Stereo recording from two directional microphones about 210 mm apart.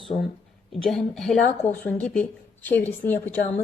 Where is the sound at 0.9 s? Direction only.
Centre (ahead or behind).